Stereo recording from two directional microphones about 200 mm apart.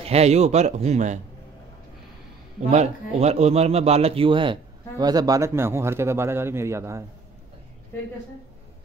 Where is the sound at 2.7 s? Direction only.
35° right (ahead or behind); by 7.0 s 15° right (ahead or behind).